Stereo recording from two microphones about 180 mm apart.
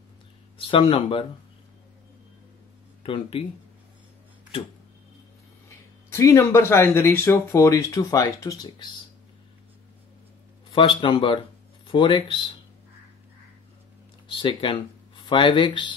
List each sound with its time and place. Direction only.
0.6 s speech: 30° left (ahead or behind)
3.0 s speech: 30° left (ahead or behind)
5.7 s speech: 15° left (ahead or behind)
10.7 s a man's voice: 30° left (ahead or behind)
14.3 s speech: 25° left (ahead or behind)